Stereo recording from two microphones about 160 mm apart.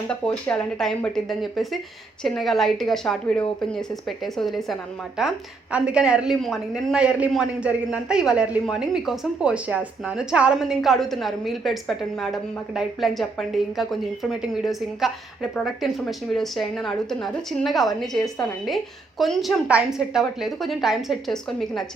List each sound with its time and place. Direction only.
0.1 s a man's voice: 5° left (ahead or behind)